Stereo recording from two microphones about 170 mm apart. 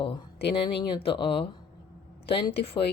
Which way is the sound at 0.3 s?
80° left.